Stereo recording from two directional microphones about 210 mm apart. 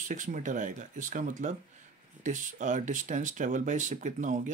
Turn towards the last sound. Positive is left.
turn(degrees=-35)  # may be behind; listen again after turning